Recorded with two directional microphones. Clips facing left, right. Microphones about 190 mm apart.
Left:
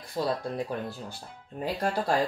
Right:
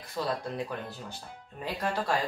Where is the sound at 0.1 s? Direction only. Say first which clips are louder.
Left 3 dB; 35° left (ahead or behind).